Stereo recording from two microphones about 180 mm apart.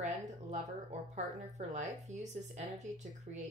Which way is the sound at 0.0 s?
40° right (ahead or behind).